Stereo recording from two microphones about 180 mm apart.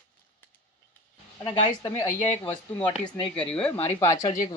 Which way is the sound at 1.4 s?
30° left (ahead or behind).